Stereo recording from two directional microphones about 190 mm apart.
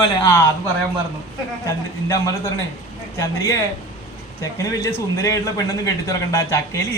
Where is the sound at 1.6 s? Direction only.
15° left (ahead or behind).